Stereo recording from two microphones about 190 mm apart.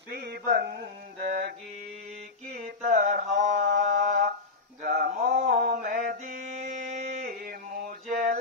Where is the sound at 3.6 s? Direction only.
50° right (ahead or behind).